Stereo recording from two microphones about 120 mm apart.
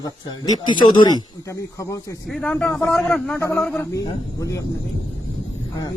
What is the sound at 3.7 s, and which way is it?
Speech, 25° left (ahead or behind).